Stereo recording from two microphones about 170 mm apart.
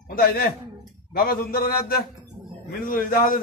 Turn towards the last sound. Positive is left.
turn(degrees=55)  # may be behind; listen again after turning